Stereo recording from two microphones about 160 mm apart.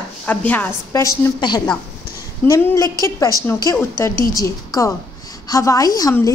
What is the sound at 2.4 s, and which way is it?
A woman's voice, 15° left (ahead or behind).